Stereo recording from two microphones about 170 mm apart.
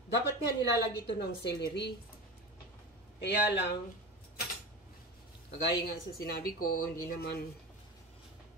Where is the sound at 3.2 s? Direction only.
85° left.